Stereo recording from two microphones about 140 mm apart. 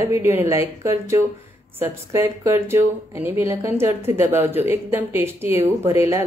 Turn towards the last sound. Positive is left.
turn(degrees=-20)  # may be behind; listen again after turning